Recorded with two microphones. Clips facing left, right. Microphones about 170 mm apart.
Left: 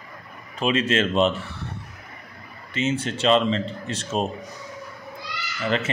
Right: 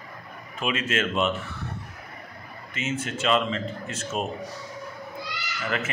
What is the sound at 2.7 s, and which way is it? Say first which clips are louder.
Speech: left 5 dB; 30° left (ahead or behind).